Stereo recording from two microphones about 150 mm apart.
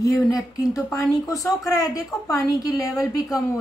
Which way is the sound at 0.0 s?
25° left (ahead or behind).